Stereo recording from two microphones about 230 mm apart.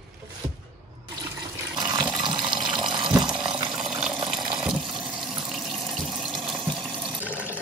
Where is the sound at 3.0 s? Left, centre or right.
Centre.